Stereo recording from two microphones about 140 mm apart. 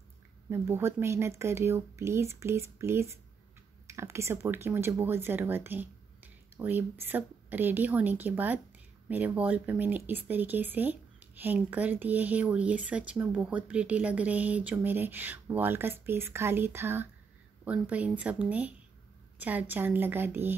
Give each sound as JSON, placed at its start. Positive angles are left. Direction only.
{"t": 0.5, "sound": "speech", "side_deg": -20}